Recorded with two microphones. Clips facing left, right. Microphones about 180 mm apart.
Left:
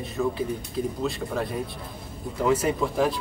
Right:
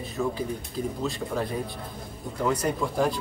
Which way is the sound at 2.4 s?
5° left (ahead or behind).